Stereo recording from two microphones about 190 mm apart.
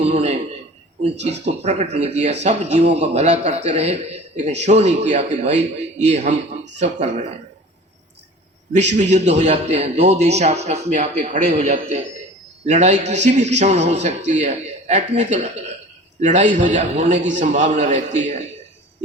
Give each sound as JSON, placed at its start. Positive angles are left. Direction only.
{"t": 0.1, "sound": "a sound", "side_deg": -35}
{"t": 1.2, "sound": "a man's voice", "side_deg": -35}
{"t": 9.0, "sound": "a man's voice", "side_deg": -40}